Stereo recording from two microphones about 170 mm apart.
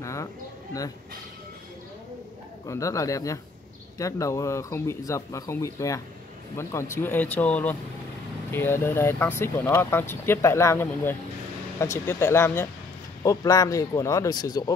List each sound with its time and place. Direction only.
0.0 s speech: 20° left (ahead or behind)
2.6 s speech: 20° left (ahead or behind)